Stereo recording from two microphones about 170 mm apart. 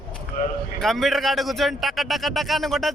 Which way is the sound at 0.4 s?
50° left (ahead or behind).